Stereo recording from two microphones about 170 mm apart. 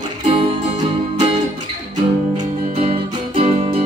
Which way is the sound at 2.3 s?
30° right (ahead or behind).